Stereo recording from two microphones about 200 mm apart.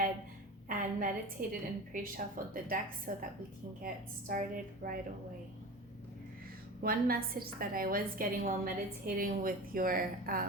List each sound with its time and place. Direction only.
0.7 s a woman's voice: 45° right (ahead or behind)
6.8 s a woman's voice: 50° right (ahead or behind)